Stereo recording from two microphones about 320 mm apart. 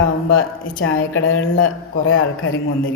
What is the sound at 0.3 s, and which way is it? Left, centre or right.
Speech, left.